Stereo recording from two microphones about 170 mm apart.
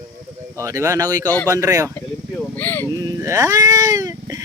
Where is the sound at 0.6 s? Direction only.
15° right (ahead or behind).